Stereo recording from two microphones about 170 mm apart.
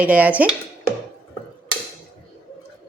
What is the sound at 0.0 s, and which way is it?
Speech, 10° right (ahead or behind).